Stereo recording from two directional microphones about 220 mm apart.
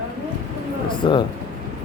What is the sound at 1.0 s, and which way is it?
Speech, 20° left (ahead or behind).